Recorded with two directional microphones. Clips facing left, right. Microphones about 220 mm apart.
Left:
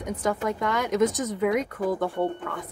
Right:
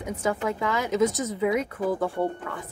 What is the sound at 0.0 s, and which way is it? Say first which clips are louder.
A woman's voice: even; 5° right (ahead or behind).